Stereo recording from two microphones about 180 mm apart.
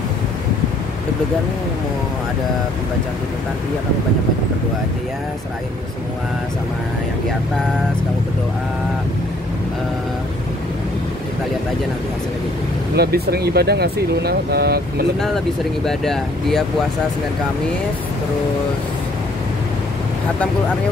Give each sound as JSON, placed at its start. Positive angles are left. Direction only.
{"t": 12.9, "sound": "speech", "side_deg": -60}
{"t": 15.1, "sound": "speech", "side_deg": 0}